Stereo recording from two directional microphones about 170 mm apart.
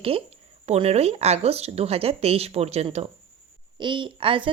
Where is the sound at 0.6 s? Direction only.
40° right (ahead or behind).